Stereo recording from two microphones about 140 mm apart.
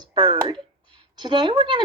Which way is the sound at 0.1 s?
35° right (ahead or behind).